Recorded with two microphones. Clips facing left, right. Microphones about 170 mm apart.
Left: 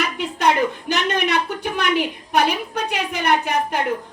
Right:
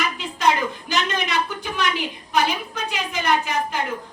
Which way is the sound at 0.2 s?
65° left (ahead or behind).